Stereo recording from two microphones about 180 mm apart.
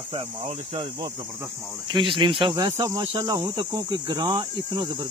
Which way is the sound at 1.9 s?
25° right (ahead or behind).